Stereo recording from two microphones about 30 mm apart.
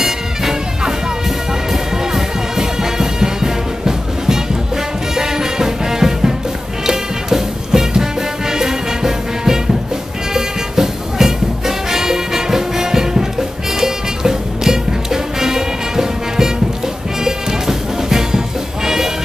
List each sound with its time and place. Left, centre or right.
0.0 s music: centre